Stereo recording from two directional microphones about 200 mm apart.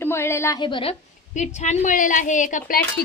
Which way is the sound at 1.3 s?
35° left (ahead or behind).